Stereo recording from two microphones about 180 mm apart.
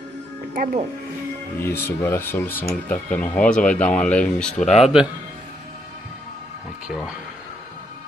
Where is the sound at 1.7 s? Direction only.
15° left (ahead or behind).